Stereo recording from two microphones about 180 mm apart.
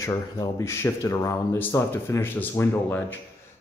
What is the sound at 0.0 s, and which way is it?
Speech, 15° left (ahead or behind).